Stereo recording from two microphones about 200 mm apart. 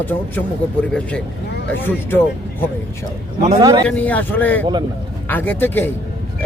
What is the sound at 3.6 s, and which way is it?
Speech, 20° right (ahead or behind).